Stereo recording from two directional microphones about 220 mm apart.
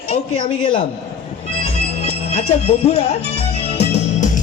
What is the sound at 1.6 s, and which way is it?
Music, 25° left (ahead or behind).